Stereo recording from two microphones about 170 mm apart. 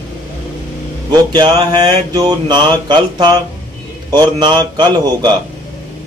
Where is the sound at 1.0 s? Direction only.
25° right (ahead or behind).